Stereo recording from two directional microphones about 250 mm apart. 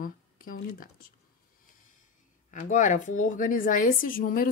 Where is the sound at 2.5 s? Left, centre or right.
Left.